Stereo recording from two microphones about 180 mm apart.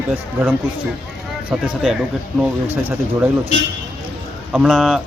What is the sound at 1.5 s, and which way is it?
Speech, 5° right (ahead or behind).